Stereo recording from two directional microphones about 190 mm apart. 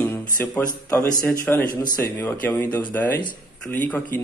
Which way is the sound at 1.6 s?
45° left (ahead or behind).